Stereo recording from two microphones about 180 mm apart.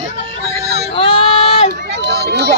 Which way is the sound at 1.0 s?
30° left (ahead or behind).